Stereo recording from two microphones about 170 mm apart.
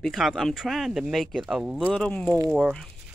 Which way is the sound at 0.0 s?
Centre (ahead or behind).